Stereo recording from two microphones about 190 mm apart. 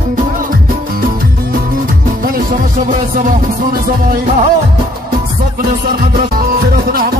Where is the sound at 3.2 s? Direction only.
45° right (ahead or behind).